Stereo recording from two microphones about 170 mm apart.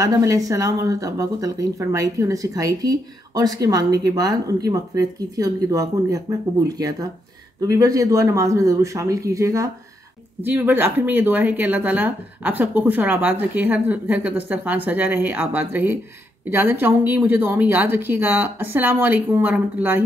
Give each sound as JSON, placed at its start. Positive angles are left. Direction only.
{"t": 0.0, "sound": "speech", "side_deg": -20}